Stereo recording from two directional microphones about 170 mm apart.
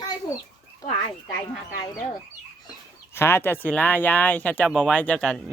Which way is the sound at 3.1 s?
15° left (ahead or behind).